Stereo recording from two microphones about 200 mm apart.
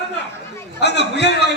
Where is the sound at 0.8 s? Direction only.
60° left (ahead or behind).